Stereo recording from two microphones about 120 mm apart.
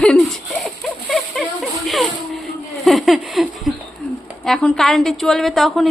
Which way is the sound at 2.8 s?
Centre (ahead or behind).